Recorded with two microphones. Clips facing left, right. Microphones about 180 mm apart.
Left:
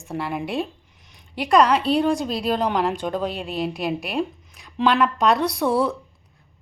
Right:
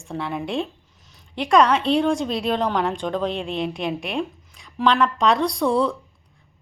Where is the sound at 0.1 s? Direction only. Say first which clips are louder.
Even; 5° left (ahead or behind).